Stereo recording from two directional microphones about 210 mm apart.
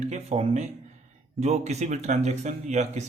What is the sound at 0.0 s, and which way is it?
Speech, 30° right (ahead or behind).